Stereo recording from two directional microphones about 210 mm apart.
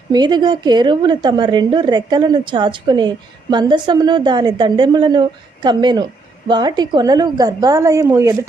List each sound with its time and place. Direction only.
0.1 s a woman's voice: 20° right (ahead or behind)